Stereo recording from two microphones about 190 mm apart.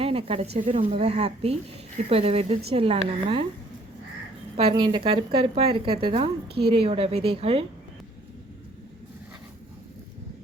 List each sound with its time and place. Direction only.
0.0 s speech: 30° right (ahead or behind)
4.7 s speech: 25° right (ahead or behind)